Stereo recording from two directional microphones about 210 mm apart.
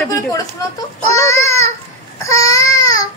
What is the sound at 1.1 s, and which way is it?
Child singing, 15° left (ahead or behind).